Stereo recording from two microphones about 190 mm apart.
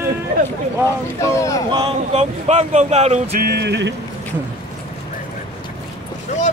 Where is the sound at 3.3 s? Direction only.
55° right (ahead or behind).